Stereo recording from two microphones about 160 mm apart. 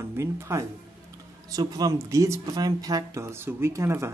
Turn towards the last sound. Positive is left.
turn(degrees=-15)  # may be behind; listen again after turning